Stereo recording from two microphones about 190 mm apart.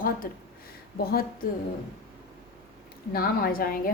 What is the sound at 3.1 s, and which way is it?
Speech, 50° left (ahead or behind).